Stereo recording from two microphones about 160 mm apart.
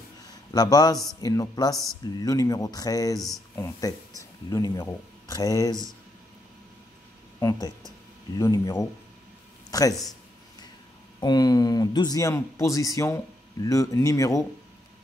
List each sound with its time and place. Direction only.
0.5 s speech: 25° left (ahead or behind)
7.3 s speech: 25° left (ahead or behind)
11.1 s speech: 25° left (ahead or behind)